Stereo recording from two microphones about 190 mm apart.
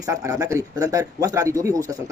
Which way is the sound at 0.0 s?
15° right (ahead or behind).